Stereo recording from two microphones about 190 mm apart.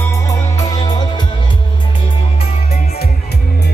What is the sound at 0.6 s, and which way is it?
Music, 20° left (ahead or behind).